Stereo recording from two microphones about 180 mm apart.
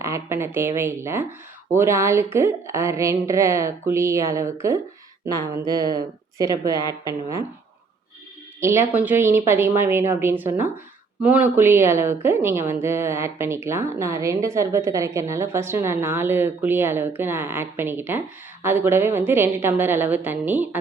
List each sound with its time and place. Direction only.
0.0 s a woman's voice: 15° right (ahead or behind)
7.0 s a woman's voice: 15° right (ahead or behind)
8.6 s a woman's voice: 15° right (ahead or behind)